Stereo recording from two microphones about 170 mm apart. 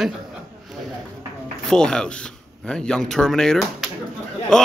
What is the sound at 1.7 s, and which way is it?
A man's voice, 5° left (ahead or behind).